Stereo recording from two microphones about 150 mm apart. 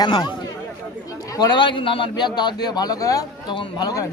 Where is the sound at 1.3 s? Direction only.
30° left (ahead or behind).